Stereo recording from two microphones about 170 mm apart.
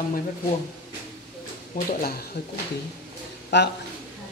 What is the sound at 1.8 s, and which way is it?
Speech, 60° left (ahead or behind).